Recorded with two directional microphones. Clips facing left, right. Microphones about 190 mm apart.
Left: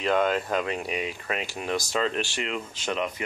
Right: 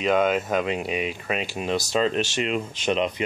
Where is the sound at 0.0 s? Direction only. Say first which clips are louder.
Right 3 dB; 15° right (ahead or behind).